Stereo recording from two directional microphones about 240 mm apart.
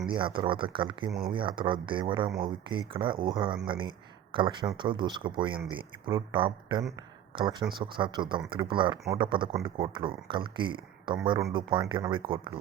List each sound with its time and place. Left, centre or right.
0.1 s speech: centre
6.9 s a sound: centre
7.9 s speech: centre